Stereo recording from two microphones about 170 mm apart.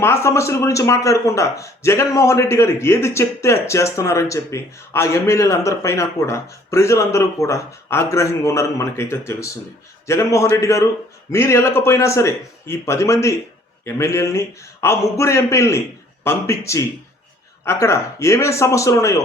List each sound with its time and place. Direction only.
0.0 s speech: 15° left (ahead or behind)